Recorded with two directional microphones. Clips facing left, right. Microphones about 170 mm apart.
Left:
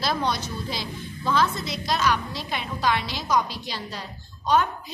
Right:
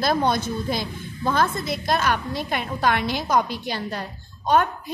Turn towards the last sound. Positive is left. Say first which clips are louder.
# right 2 dB
turn(degrees=-55)  # may be behind; listen again after turning